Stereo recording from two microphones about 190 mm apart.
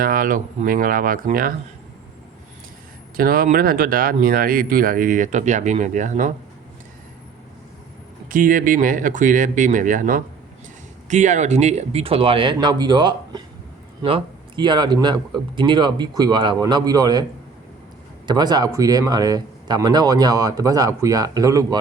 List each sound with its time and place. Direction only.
0.0 s speech: 45° right (ahead or behind)
3.2 s speech: 50° right (ahead or behind)
8.3 s speech: 45° right (ahead or behind); by 17.2 s 20° right (ahead or behind)
18.3 s speech: 20° right (ahead or behind)